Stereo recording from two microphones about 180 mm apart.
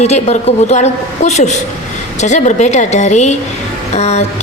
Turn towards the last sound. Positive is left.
turn(degrees=35)  # may be behind; listen again after turning